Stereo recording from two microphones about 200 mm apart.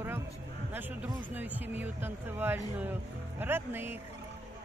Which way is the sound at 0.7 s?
10° right (ahead or behind).